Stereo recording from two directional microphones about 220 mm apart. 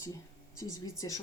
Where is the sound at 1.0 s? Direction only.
20° left (ahead or behind).